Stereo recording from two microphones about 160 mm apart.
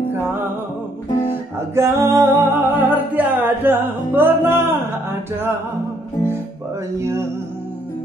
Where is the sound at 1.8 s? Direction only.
15° right (ahead or behind).